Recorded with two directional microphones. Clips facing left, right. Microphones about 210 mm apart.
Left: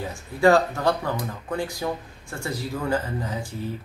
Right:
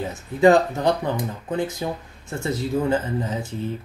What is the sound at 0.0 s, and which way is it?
Speech, 20° right (ahead or behind).